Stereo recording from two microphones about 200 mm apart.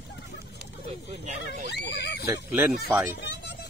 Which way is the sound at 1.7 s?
60° left (ahead or behind).